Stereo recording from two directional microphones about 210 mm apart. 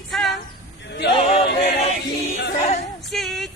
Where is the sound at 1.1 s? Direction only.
30° left (ahead or behind).